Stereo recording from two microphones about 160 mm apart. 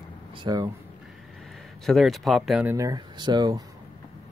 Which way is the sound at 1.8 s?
Centre (ahead or behind).